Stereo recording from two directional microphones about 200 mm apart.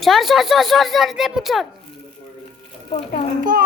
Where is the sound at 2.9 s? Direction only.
30° left (ahead or behind).